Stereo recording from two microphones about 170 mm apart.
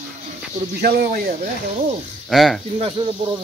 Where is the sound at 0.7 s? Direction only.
65° right (ahead or behind).